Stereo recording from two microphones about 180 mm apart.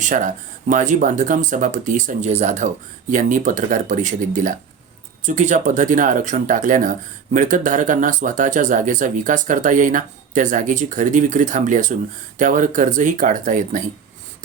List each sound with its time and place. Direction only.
0.0 s speech: 45° right (ahead or behind)